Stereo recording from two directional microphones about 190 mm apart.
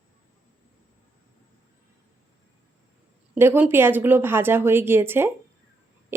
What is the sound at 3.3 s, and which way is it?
A woman's voice, 10° right (ahead or behind).